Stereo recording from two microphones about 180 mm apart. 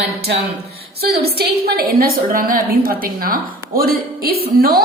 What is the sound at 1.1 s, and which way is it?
A woman's voice, 60° right (ahead or behind).